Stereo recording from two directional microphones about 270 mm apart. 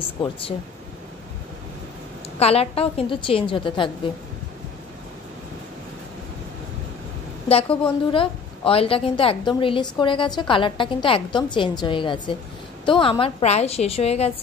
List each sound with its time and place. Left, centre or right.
0.2 s a woman's voice: centre
2.3 s a woman's voice: left
7.4 s a woman's voice: left